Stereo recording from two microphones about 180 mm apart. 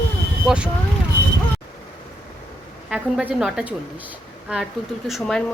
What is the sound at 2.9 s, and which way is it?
A woman's voice, 5° right (ahead or behind).